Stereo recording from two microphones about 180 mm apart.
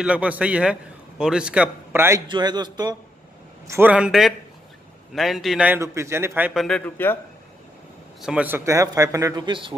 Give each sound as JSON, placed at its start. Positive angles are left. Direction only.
{"t": 0.0, "sound": "a man's voice", "side_deg": -5}
{"t": 2.2, "sound": "speech", "side_deg": -25}
{"t": 3.6, "sound": "a man's voice", "side_deg": -10}
{"t": 7.0, "sound": "a man's voice", "side_deg": 10}
{"t": 8.2, "sound": "a man's voice", "side_deg": -5}